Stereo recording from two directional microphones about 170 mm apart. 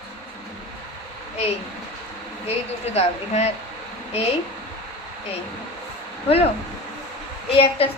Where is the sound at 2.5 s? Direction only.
40° left (ahead or behind).